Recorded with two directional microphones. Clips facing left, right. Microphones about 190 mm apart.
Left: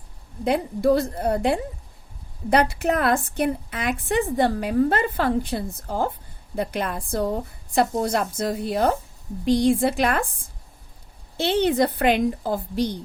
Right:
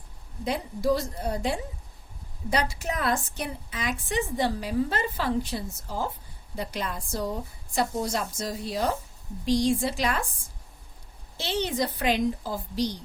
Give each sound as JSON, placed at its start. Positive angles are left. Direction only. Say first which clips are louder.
{"t": 0.4, "sound": "a woman's voice", "louder": "left 6 dB", "side_deg": 60}
{"t": 11.3, "sound": "a woman's voice", "louder": "left 8 dB", "side_deg": 60}